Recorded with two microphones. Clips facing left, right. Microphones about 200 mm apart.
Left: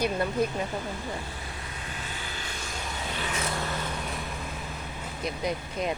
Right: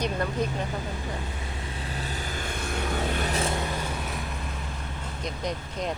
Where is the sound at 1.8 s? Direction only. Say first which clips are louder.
Right 6 dB; 35° right (ahead or behind); by 3.2 s 55° right (ahead or behind).